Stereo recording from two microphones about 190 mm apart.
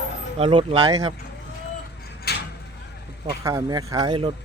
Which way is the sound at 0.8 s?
20° right (ahead or behind).